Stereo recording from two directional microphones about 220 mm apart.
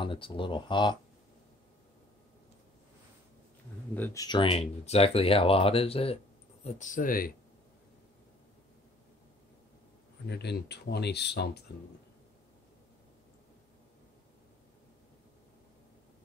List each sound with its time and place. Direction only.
0.0 s speech: 25° left (ahead or behind)
3.9 s speech: 10° left (ahead or behind); by 7.3 s 40° left (ahead or behind)
10.2 s speech: 50° left (ahead or behind)